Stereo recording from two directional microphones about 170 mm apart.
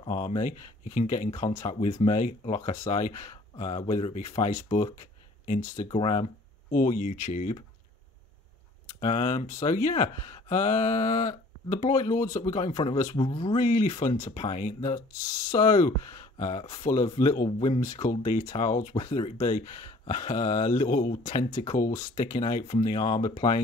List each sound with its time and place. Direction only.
0.4 s speech: 45° left (ahead or behind)
5.9 s speech: 35° left (ahead or behind)
6.7 s speech: 50° left (ahead or behind)
9.0 s speech: 45° left (ahead or behind)
13.2 s speech: 30° left (ahead or behind)
13.6 s speech: 50° left (ahead or behind)
19.1 s speech: 35° left (ahead or behind)
19.4 s speech: 50° left (ahead or behind)